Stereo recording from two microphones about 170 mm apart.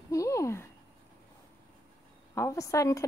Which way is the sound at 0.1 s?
20° left (ahead or behind).